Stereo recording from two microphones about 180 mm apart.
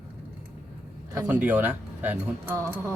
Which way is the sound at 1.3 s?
5° right (ahead or behind).